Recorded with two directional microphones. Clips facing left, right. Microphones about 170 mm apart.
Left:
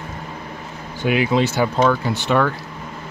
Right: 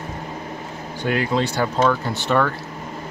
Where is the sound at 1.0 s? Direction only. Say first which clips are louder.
Left 3 dB; 10° left (ahead or behind).